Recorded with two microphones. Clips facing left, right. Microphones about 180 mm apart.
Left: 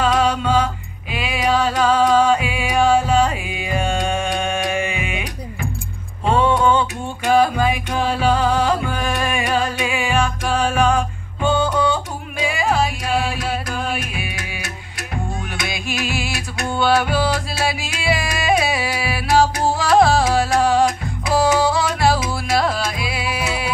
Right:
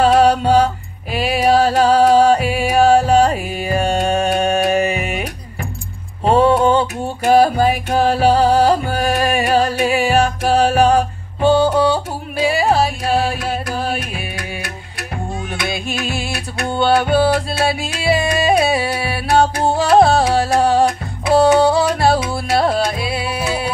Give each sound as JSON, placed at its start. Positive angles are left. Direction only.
{"t": 0.2, "sound": "music", "side_deg": -40}
{"t": 15.7, "sound": "music", "side_deg": -30}